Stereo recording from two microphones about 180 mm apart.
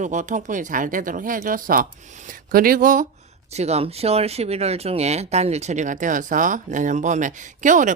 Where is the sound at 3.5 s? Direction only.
35° right (ahead or behind).